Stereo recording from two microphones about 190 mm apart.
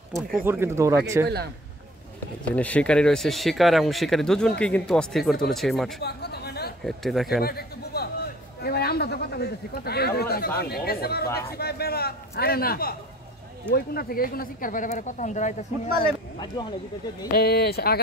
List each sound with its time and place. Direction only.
0.5 s speech: 15° right (ahead or behind)
2.5 s speech: 5° left (ahead or behind)
5.9 s chatter: 60° left (ahead or behind)
6.8 s speech: centre (ahead or behind)
7.4 s a sound: 55° left (ahead or behind)
8.6 s a man's voice: 55° left (ahead or behind)
11.2 s a man's voice: 15° left (ahead or behind)
11.5 s a man's voice: 55° left (ahead or behind); by 15.9 s 40° left (ahead or behind)
16.6 s speech: 20° left (ahead or behind)
17.3 s a man's voice: 55° left (ahead or behind)